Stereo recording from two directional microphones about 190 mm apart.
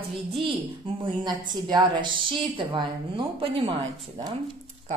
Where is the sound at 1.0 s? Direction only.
25° right (ahead or behind).